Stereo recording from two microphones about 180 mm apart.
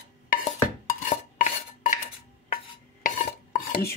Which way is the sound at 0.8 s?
45° left (ahead or behind).